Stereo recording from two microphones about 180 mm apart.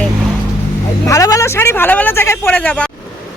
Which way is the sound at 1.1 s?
20° left (ahead or behind).